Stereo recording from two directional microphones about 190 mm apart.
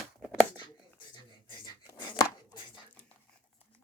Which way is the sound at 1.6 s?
25° left (ahead or behind).